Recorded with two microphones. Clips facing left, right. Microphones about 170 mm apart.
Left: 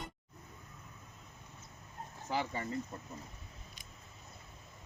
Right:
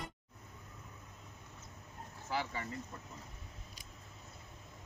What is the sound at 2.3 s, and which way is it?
Chicken, 35° left (ahead or behind).